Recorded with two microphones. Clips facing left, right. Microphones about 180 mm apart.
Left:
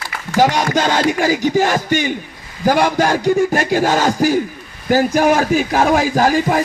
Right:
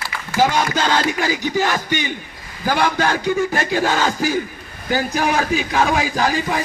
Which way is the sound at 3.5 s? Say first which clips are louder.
Left 4 dB; 45° left (ahead or behind).